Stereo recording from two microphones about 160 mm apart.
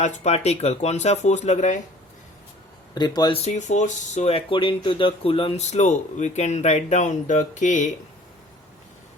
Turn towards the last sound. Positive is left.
turn(degrees=50)  # may be behind; listen again after turning